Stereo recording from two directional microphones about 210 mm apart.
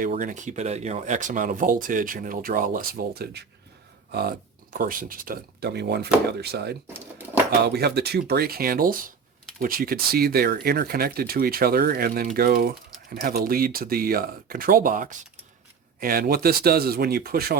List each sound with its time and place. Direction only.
0.0 s speech: 40° right (ahead or behind)